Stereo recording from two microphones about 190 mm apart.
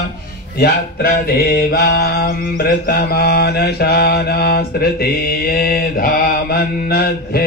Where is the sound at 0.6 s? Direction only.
55° left (ahead or behind).